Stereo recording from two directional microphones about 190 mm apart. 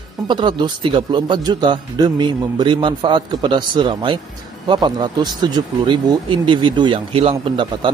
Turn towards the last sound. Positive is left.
turn(degrees=-25)  # may be behind; listen again after turning